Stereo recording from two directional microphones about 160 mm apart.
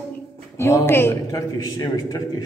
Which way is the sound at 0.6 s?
15° left (ahead or behind).